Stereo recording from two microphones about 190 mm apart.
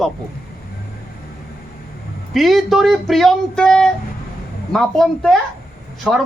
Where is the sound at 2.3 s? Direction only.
Centre (ahead or behind).